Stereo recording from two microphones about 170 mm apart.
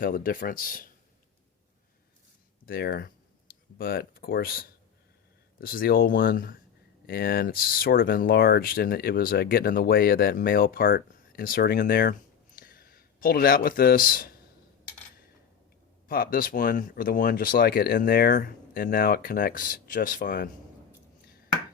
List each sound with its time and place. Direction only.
0.0 s speech: 55° left (ahead or behind)
2.6 s speech: 60° left (ahead or behind)
12.5 s a sound: 60° left (ahead or behind)
16.0 s speech: 60° left (ahead or behind)